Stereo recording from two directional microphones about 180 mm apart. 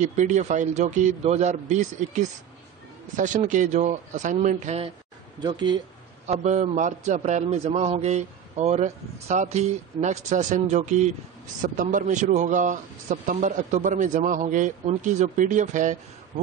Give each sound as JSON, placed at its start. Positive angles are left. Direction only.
{"t": 0.0, "sound": "a man's voice", "side_deg": -40}
{"t": 5.4, "sound": "speech", "side_deg": -25}
{"t": 6.2, "sound": "a man's voice", "side_deg": -40}